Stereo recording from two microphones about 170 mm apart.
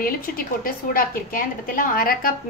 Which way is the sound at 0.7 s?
55° left (ahead or behind).